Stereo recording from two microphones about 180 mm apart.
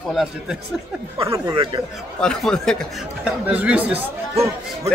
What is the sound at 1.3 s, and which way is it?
Speech, 25° right (ahead or behind).